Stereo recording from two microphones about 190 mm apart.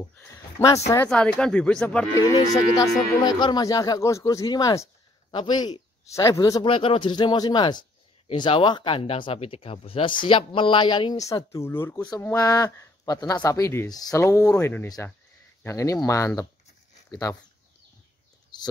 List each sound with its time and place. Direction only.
0.0 s speech: 15° left (ahead or behind)
2.1 s speech: 15° left (ahead or behind)